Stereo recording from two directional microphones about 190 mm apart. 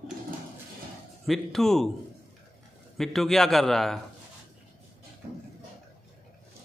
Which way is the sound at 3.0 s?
Centre (ahead or behind).